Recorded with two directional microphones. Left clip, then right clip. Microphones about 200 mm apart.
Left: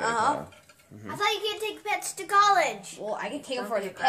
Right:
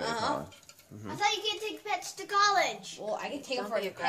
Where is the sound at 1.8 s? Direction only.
5° left (ahead or behind).